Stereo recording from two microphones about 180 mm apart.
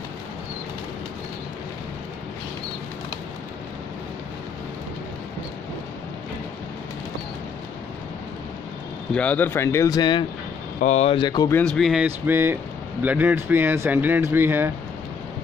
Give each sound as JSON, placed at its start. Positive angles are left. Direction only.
{"t": 9.1, "sound": "speech", "side_deg": 10}
{"t": 10.8, "sound": "speech", "side_deg": 40}
{"t": 11.5, "sound": "speech", "side_deg": 5}